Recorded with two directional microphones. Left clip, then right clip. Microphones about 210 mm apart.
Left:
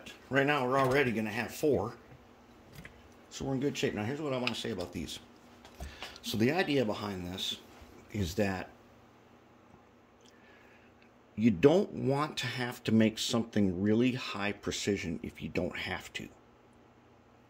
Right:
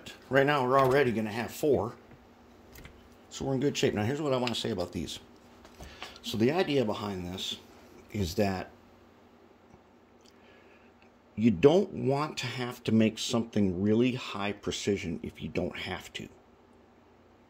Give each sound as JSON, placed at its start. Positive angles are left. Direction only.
{"t": 0.0, "sound": "speech", "side_deg": -30}
{"t": 3.3, "sound": "speech", "side_deg": -20}
{"t": 6.1, "sound": "speech", "side_deg": -10}
{"t": 11.3, "sound": "speech", "side_deg": -5}